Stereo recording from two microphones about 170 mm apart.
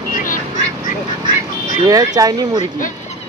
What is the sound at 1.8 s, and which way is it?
Speech, 20° right (ahead or behind).